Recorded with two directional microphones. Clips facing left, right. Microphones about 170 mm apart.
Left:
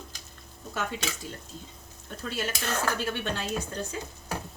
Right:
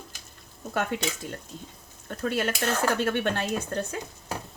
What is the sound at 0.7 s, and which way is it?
Speech, 60° right (ahead or behind).